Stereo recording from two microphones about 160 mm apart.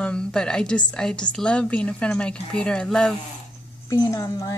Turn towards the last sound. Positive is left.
turn(degrees=20)  # may be behind; listen again after turning